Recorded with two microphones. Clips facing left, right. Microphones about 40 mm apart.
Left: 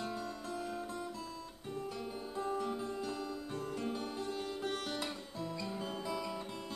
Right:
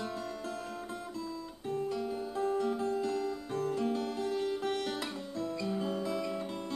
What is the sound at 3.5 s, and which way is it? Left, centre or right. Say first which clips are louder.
Music: right 7 dB; right.